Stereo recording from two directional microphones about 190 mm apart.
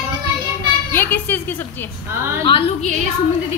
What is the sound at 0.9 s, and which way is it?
Speech, 10° left (ahead or behind).